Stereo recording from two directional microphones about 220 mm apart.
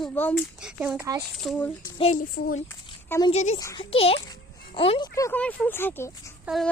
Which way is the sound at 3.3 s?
30° left (ahead or behind).